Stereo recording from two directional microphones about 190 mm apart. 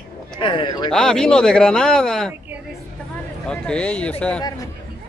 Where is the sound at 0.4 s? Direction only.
25° left (ahead or behind).